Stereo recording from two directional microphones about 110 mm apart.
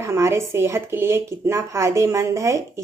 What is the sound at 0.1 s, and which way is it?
Speech, 25° right (ahead or behind).